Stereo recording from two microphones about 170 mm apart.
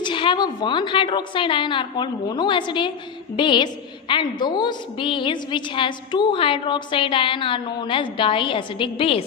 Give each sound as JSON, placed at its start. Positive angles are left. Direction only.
{"t": 0.0, "sound": "a woman's voice", "side_deg": 30}